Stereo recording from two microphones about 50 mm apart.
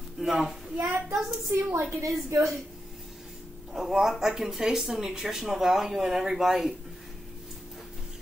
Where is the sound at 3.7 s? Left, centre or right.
Centre.